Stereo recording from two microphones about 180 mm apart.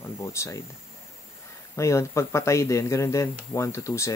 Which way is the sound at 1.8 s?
15° left (ahead or behind).